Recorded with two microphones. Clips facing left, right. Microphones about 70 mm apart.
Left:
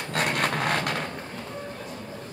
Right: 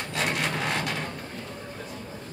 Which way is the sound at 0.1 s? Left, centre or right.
Left.